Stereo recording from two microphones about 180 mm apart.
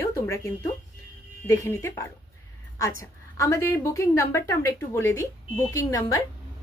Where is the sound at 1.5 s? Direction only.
15° left (ahead or behind).